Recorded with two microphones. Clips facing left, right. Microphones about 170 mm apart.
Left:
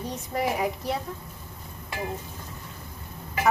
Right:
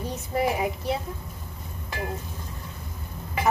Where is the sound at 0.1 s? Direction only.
Centre (ahead or behind).